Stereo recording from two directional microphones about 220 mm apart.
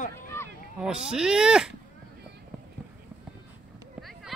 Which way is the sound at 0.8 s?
5° right (ahead or behind).